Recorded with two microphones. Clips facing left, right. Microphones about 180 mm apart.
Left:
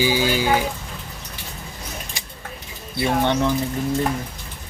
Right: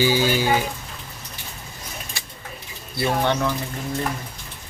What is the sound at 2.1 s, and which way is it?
Bird, 15° left (ahead or behind).